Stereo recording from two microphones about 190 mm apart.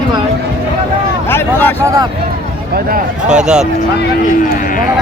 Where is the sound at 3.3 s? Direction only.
5° right (ahead or behind).